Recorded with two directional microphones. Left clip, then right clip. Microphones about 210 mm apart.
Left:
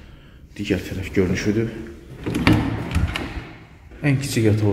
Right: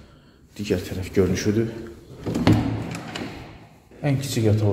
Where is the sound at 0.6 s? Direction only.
5° right (ahead or behind).